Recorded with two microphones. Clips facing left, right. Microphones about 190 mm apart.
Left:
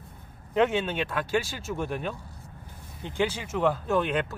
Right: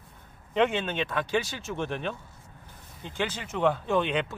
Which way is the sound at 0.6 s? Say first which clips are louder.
Left 1 dB; 5° left (ahead or behind).